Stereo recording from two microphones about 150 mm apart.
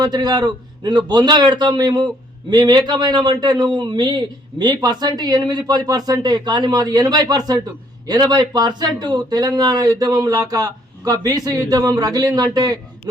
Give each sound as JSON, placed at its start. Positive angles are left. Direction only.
{"t": 0.0, "sound": "a man's voice", "side_deg": -25}